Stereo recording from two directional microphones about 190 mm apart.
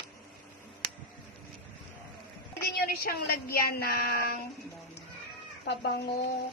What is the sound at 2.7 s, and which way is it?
A woman's voice, 55° left (ahead or behind).